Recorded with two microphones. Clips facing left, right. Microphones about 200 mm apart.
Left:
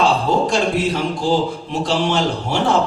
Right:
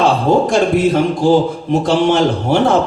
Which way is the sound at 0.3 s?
50° right (ahead or behind).